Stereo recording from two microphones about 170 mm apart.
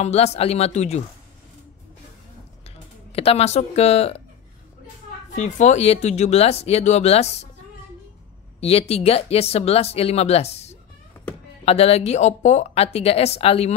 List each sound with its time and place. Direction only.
0.0 s speech: 40° left (ahead or behind)
3.1 s speech: 35° left (ahead or behind)
5.6 s speech: 40° left (ahead or behind)
8.5 s speech: 35° left (ahead or behind)